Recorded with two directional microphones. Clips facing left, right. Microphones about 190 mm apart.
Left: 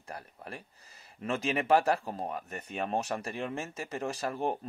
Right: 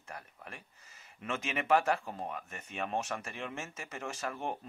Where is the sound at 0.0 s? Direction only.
35° left (ahead or behind).